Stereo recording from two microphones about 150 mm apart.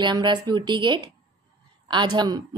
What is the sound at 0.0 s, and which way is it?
A woman's voice, 30° right (ahead or behind).